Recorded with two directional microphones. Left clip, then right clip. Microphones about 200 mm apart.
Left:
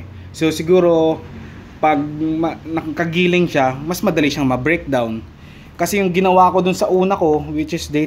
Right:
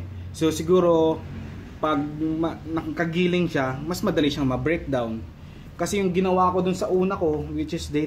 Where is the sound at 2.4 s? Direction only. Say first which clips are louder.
Left 6 dB; 35° left (ahead or behind).